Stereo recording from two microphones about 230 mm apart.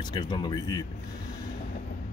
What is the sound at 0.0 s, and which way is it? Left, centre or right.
Speech, centre.